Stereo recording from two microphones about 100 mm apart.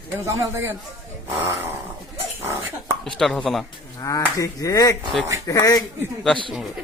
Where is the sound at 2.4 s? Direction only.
25° right (ahead or behind).